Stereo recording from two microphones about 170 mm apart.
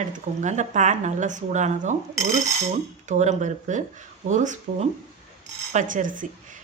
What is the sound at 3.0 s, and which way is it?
Speech, 45° right (ahead or behind).